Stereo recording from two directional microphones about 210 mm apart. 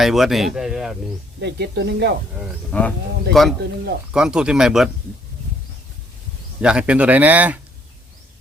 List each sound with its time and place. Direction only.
0.0 s speech: centre (ahead or behind)
1.4 s speech: 55° right (ahead or behind)
2.4 s speech: 5° left (ahead or behind)
6.6 s speech: 5° right (ahead or behind)